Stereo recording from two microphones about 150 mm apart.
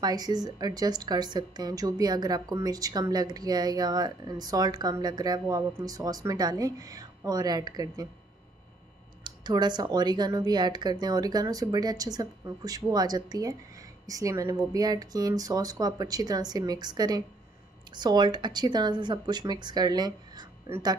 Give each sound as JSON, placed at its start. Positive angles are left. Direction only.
{"t": 0.0, "sound": "a woman's voice", "side_deg": -25}
{"t": 9.2, "sound": "a woman's voice", "side_deg": -30}